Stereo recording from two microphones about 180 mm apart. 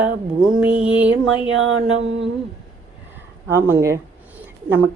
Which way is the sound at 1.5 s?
90° right.